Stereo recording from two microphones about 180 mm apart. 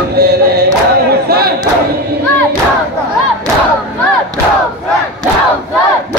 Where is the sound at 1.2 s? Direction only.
60° right (ahead or behind).